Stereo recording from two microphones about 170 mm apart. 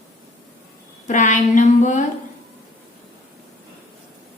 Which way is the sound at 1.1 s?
45° left (ahead or behind).